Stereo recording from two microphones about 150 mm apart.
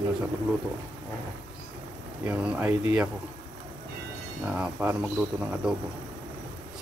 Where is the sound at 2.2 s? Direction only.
10° right (ahead or behind).